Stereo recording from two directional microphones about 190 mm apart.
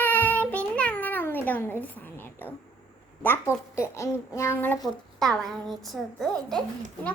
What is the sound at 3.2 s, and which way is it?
A child's voice, 10° left (ahead or behind).